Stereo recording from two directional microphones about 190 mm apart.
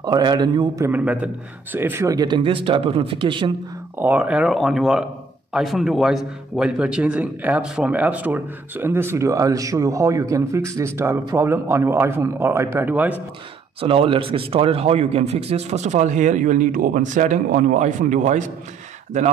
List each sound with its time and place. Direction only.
0.0 s a man's voice: 20° right (ahead or behind)
0.8 s a man's voice: 10° right (ahead or behind); by 3.5 s 25° right (ahead or behind)
4.0 s a man's voice: 10° right (ahead or behind)
13.7 s a man's voice: 30° right (ahead or behind)